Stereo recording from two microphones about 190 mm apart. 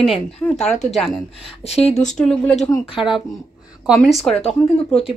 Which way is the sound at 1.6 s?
30° left (ahead or behind).